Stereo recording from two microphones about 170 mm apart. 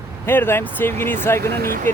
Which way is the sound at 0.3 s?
15° left (ahead or behind).